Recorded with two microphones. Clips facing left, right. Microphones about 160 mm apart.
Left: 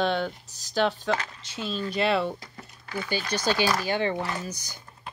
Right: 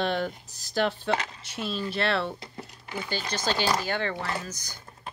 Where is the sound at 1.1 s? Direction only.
20° right (ahead or behind).